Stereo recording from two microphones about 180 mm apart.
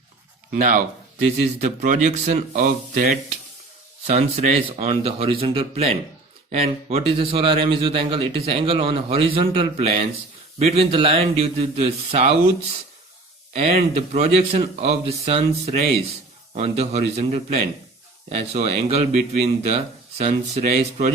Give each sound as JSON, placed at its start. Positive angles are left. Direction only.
{"t": 0.5, "sound": "speech", "side_deg": -45}
{"t": 4.0, "sound": "speech", "side_deg": -40}
{"t": 5.2, "sound": "speech", "side_deg": -30}
{"t": 13.5, "sound": "speech", "side_deg": -35}
{"t": 16.6, "sound": "speech", "side_deg": -35}